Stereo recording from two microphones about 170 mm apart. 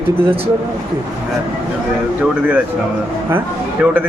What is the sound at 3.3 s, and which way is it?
Speech, 10° right (ahead or behind).